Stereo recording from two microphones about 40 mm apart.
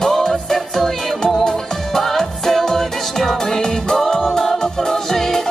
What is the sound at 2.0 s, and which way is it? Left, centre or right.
Music, centre.